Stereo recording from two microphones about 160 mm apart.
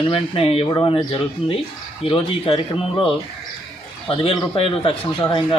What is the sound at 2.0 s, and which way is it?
A man's voice, 35° left (ahead or behind).